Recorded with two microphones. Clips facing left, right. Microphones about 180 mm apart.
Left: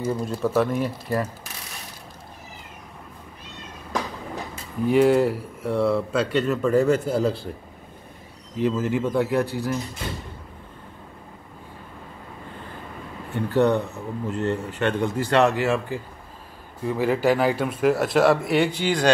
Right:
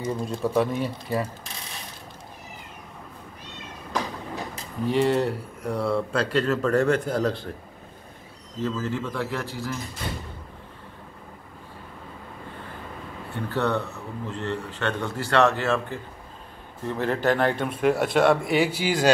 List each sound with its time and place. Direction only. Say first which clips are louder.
0.2 s speech: even; centre (ahead or behind)
4.8 s speech: left 5 dB; 5° left (ahead or behind)
8.5 s speech: left 5 dB; 15° left (ahead or behind)
13.3 s speech: left 6 dB; 15° left (ahead or behind); by 19.1 s 5° right (ahead or behind)